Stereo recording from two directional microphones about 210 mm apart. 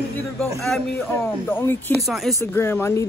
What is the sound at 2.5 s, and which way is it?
Speech, 10° left (ahead or behind).